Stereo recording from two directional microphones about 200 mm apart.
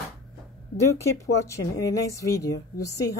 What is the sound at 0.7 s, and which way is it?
A woman's voice, 15° left (ahead or behind).